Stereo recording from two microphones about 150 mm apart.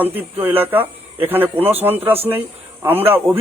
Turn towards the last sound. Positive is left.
turn(degrees=-15)  # may be behind; listen again after turning